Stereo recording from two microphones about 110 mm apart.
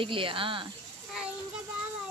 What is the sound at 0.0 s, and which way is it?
Speech, 55° right (ahead or behind).